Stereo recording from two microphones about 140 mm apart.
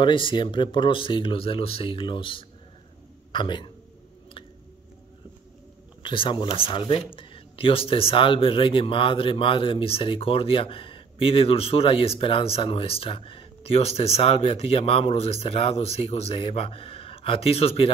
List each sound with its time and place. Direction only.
0.0 s speech: 35° left (ahead or behind)
6.0 s speech: 35° left (ahead or behind)